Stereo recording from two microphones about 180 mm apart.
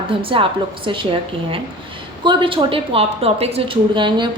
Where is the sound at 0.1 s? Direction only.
30° right (ahead or behind).